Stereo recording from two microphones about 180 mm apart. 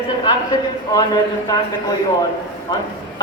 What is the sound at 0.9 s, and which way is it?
Speech, 20° left (ahead or behind).